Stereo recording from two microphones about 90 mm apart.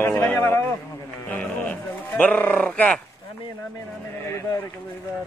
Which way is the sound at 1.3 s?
15° left (ahead or behind).